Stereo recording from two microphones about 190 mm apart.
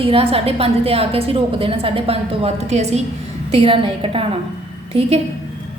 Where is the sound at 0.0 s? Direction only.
30° right (ahead or behind).